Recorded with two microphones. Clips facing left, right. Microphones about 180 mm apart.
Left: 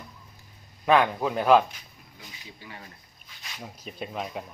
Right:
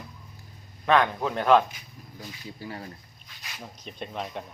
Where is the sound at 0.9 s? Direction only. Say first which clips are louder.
Left 1 dB; 10° left (ahead or behind).